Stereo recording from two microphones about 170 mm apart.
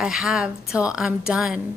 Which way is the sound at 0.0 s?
Centre (ahead or behind).